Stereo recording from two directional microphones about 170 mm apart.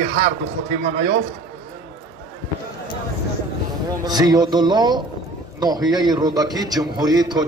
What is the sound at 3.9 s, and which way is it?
A man's voice, 20° right (ahead or behind).